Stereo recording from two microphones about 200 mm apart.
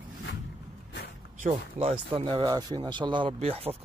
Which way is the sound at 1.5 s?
30° right (ahead or behind).